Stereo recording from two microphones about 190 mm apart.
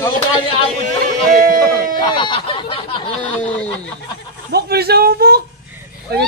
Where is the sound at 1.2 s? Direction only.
45° right (ahead or behind).